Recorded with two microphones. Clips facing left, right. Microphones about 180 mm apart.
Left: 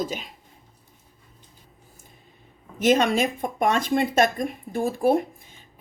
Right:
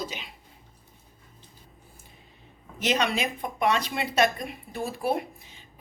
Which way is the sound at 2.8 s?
45° left (ahead or behind).